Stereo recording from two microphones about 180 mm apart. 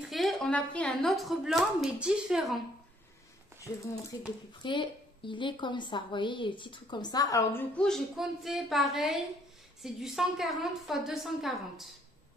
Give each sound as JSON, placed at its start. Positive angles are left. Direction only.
{"t": 0.1, "sound": "a woman's voice", "side_deg": 0}
{"t": 4.1, "sound": "a woman's voice", "side_deg": 20}
{"t": 7.7, "sound": "a woman's voice", "side_deg": 5}